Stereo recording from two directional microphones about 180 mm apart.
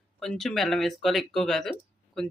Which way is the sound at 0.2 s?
Centre (ahead or behind).